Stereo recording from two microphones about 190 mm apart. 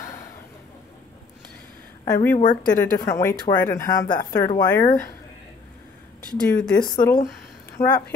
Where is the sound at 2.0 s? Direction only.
15° left (ahead or behind).